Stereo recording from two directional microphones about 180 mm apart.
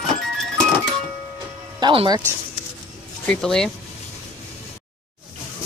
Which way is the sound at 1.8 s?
25° right (ahead or behind).